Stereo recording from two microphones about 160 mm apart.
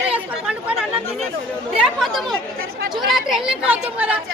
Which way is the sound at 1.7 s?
Centre (ahead or behind).